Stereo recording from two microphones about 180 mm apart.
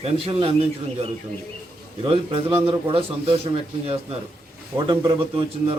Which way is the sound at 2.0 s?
30° right (ahead or behind).